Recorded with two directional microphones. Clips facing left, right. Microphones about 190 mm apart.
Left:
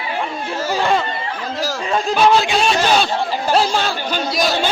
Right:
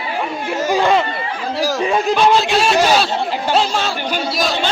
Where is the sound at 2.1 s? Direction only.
Centre (ahead or behind).